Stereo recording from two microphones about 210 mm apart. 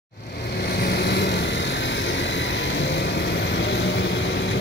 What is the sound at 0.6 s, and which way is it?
Vehicle, 50° left (ahead or behind).